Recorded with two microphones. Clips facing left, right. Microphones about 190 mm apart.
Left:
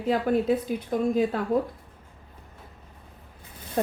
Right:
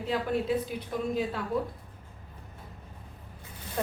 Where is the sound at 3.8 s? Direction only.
40° left (ahead or behind).